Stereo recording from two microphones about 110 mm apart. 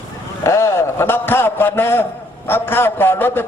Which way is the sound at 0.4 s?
25° left (ahead or behind).